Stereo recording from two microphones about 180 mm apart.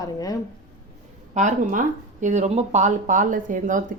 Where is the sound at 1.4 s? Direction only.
45° right (ahead or behind).